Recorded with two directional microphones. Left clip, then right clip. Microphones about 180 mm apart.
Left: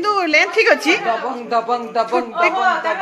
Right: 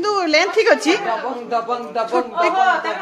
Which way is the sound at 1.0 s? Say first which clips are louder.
Left 2 dB; 55° left (ahead or behind).